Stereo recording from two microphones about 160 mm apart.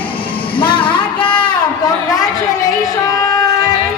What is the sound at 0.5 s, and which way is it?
Music, 30° left (ahead or behind).